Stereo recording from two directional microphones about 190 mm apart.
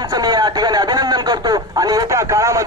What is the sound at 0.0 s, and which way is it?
Speech, 20° right (ahead or behind).